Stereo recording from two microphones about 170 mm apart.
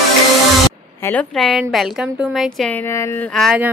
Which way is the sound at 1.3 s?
Centre (ahead or behind).